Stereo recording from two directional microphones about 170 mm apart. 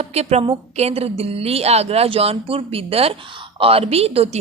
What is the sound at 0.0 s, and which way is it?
A woman's voice, 40° right (ahead or behind).